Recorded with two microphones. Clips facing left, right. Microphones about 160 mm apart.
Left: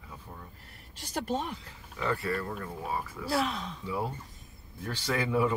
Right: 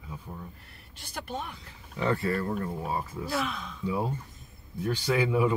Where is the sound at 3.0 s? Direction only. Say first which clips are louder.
Right 3 dB; 20° right (ahead or behind).